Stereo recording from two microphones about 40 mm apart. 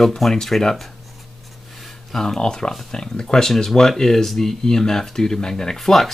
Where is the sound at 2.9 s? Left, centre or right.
Centre.